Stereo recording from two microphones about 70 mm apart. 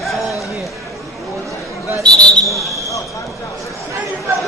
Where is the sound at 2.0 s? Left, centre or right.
Centre.